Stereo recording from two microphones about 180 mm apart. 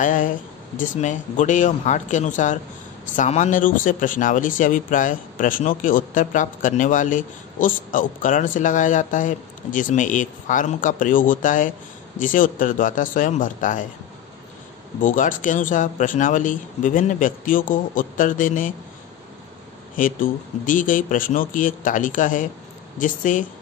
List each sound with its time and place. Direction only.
0.0 s speech: 50° left (ahead or behind)
15.0 s speech: 45° left (ahead or behind)
20.0 s speech: 50° left (ahead or behind)